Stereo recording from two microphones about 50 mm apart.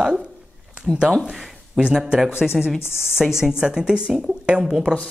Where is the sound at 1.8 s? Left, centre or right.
Centre.